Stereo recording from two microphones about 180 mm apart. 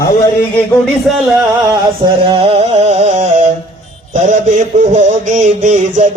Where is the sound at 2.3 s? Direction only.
35° right (ahead or behind).